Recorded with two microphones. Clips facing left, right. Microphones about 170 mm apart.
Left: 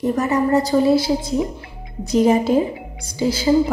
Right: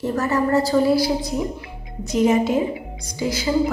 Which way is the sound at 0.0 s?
15° left (ahead or behind).